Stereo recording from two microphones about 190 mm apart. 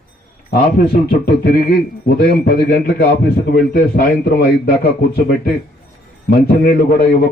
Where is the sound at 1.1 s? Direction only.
55° left (ahead or behind).